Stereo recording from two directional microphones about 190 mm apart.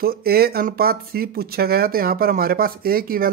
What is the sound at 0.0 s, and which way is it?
Speech, 55° right (ahead or behind).